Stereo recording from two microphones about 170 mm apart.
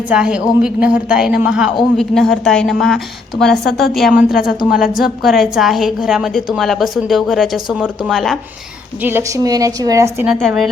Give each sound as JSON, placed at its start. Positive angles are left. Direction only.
{"t": 0.1, "sound": "a woman's voice", "side_deg": -5}
{"t": 9.0, "sound": "a woman's voice", "side_deg": -15}
{"t": 10.2, "sound": "a woman's voice", "side_deg": 0}